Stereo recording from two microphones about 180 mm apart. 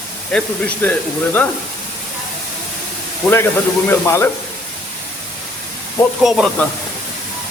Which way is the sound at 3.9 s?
15° left (ahead or behind).